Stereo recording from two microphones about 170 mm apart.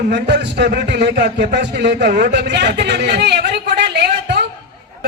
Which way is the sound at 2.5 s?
85° right.